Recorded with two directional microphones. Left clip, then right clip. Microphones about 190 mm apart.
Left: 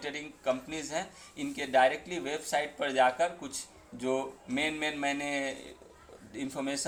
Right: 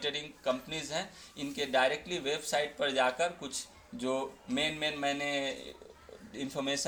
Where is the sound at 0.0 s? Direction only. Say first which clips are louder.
Even; 25° right (ahead or behind).